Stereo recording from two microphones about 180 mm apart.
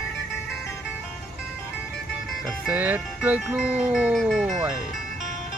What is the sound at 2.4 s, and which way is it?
Speech, 10° right (ahead or behind).